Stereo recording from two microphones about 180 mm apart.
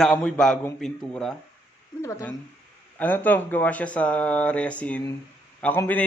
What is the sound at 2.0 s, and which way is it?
Speech, 15° left (ahead or behind).